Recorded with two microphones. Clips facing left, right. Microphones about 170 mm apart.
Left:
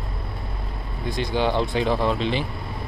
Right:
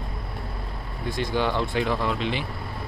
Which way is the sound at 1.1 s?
20° left (ahead or behind).